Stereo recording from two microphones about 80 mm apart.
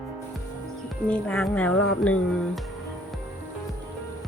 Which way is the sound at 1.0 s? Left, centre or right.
Centre.